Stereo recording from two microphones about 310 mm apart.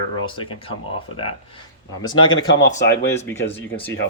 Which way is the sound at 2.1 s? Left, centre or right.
Left.